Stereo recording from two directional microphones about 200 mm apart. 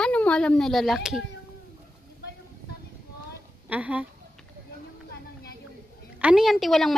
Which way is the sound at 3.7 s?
5° right (ahead or behind).